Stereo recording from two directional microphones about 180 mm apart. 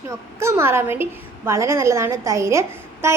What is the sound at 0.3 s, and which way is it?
A woman's voice, 15° right (ahead or behind).